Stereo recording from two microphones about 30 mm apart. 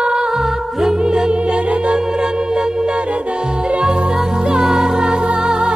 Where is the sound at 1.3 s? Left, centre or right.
Right.